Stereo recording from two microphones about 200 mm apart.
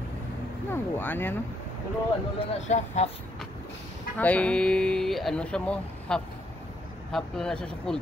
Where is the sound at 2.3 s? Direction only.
35° left (ahead or behind).